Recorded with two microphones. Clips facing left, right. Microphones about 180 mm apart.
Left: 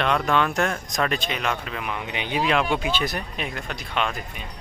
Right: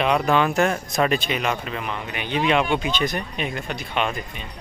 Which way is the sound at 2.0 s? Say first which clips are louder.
Even; 15° left (ahead or behind).